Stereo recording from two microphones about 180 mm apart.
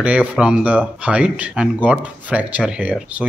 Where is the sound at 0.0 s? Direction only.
5° right (ahead or behind).